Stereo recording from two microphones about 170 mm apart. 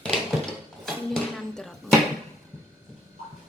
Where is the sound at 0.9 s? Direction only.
Centre (ahead or behind).